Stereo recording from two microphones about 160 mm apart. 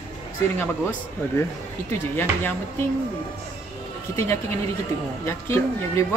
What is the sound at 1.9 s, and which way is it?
Speech, 15° left (ahead or behind).